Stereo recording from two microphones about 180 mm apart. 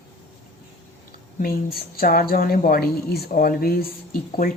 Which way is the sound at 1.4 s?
55° left (ahead or behind).